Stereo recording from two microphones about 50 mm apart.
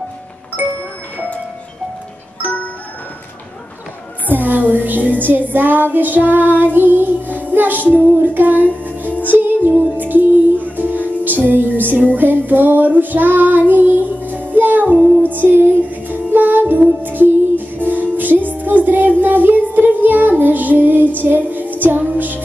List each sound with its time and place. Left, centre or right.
0.6 s music: right
1.1 s music: left
4.3 s a woman's voice: right
5.5 s child singing: right
7.3 s music: right